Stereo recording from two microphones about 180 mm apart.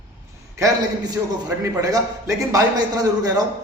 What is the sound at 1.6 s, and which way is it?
A man's voice, 20° right (ahead or behind).